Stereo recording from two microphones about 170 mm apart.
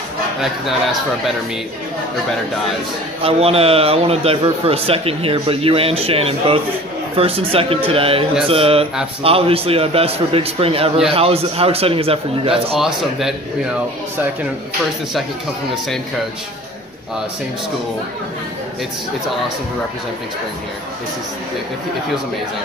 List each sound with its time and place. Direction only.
3.2 s a man's voice: 35° right (ahead or behind)
12.7 s a man's voice: centre (ahead or behind)